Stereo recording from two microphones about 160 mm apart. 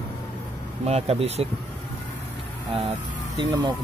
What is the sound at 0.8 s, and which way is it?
Speech, 40° right (ahead or behind).